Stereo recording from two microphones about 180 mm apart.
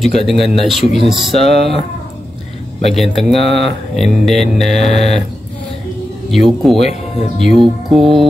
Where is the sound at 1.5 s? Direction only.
35° left (ahead or behind).